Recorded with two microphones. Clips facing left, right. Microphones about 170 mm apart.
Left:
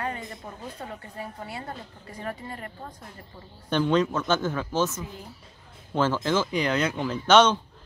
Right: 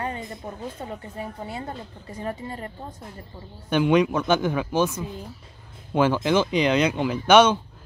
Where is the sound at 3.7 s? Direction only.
15° right (ahead or behind).